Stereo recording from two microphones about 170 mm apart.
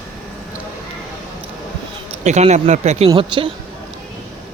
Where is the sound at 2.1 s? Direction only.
40° right (ahead or behind).